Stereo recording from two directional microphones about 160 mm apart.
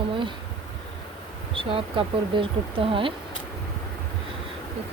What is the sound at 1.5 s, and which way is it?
Speech, 35° right (ahead or behind).